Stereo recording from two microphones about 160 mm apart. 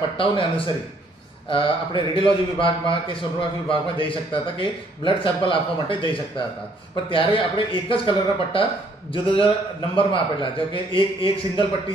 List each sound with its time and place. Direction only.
0.2 s a man's voice: 35° left (ahead or behind)